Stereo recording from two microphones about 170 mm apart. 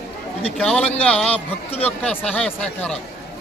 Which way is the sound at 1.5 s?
35° left (ahead or behind).